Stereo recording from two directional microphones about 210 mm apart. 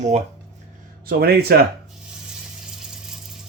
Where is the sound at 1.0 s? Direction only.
45° right (ahead or behind).